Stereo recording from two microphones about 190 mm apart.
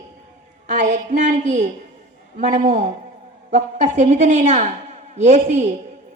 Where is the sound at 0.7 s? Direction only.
40° right (ahead or behind).